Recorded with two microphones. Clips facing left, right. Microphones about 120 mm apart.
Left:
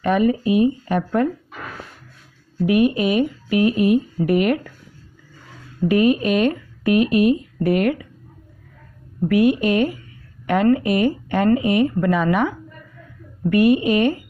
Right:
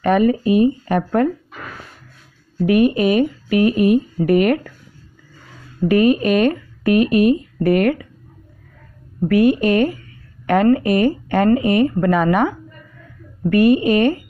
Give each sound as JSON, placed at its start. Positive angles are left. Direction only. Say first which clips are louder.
{"t": 0.0, "sound": "speech", "louder": "right 3 dB", "side_deg": -50}
{"t": 2.6, "sound": "speech", "louder": "right 2 dB", "side_deg": -50}
{"t": 5.9, "sound": "speech", "louder": "right 2 dB", "side_deg": -50}
{"t": 9.3, "sound": "speech", "louder": "right 2 dB", "side_deg": -45}